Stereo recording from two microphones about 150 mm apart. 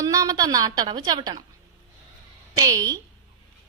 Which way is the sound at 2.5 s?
25° right (ahead or behind).